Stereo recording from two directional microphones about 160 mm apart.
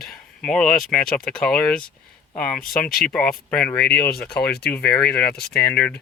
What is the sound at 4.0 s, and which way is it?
Speech, 70° left (ahead or behind).